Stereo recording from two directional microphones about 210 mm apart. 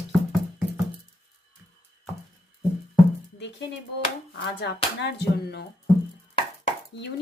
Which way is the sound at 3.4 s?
55° left (ahead or behind).